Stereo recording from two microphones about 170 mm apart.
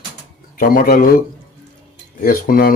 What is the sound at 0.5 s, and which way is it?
Speech, 60° left (ahead or behind).